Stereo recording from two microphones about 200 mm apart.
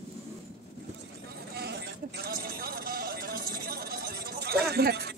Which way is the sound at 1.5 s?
55° right (ahead or behind).